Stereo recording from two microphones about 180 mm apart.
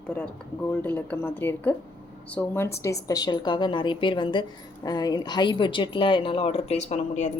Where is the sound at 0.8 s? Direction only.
10° left (ahead or behind).